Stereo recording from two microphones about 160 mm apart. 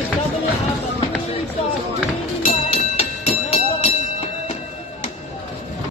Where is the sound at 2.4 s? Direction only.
40° left (ahead or behind).